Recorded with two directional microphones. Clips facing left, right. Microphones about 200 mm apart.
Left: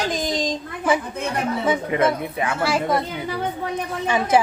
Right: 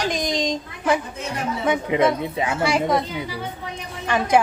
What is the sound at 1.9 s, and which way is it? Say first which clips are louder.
Speech: right 1 dB; 20° right (ahead or behind).